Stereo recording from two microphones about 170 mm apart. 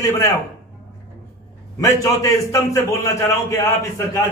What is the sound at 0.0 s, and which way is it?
Speech, 15° left (ahead or behind).